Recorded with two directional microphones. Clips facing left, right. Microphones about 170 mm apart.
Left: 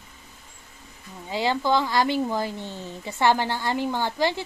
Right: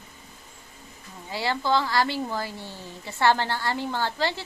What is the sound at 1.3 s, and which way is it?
A woman's voice, 20° left (ahead or behind).